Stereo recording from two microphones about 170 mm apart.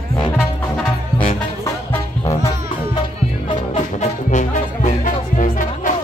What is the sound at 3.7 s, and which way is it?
Music, 45° left (ahead or behind).